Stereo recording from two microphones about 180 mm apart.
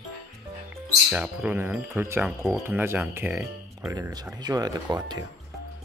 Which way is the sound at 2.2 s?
Centre (ahead or behind).